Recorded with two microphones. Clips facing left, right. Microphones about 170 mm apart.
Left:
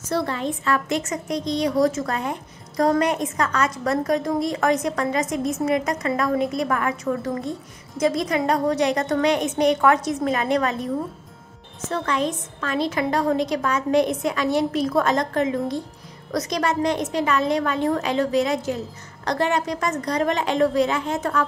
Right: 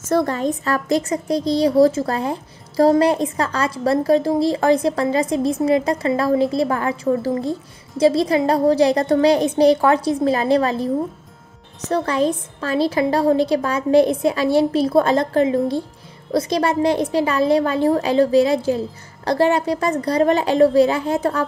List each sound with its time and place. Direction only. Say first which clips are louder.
0.0 s a woman's voice: right 6 dB; 45° right (ahead or behind)
11.9 s a woman's voice: right 5 dB; 35° right (ahead or behind)